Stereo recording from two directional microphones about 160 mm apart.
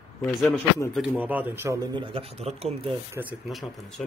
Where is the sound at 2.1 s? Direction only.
40° right (ahead or behind).